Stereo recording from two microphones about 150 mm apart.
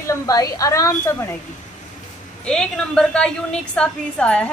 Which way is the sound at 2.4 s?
5° left (ahead or behind).